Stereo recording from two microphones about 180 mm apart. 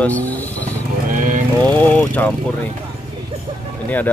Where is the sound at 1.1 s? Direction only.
50° right (ahead or behind).